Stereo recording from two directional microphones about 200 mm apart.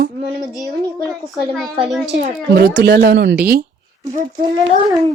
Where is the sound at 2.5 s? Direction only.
55° right (ahead or behind).